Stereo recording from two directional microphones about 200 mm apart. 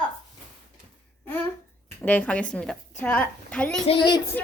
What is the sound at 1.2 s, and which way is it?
A woman's voice, 10° left (ahead or behind).